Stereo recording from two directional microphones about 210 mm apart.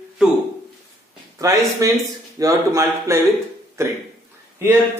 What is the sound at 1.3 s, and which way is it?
Speech, 15° right (ahead or behind).